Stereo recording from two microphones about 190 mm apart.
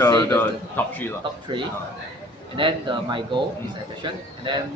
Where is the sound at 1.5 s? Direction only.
25° right (ahead or behind).